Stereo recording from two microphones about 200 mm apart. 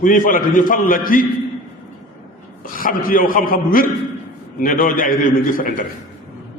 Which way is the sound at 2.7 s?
45° left (ahead or behind).